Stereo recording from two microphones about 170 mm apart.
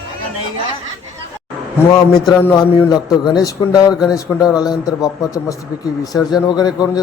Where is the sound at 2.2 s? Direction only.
20° left (ahead or behind).